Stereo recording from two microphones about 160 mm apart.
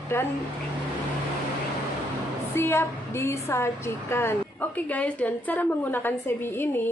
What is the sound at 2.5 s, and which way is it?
A woman's voice, 15° left (ahead or behind).